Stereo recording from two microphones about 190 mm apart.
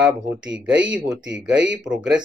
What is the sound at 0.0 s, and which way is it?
Speech, 5° right (ahead or behind).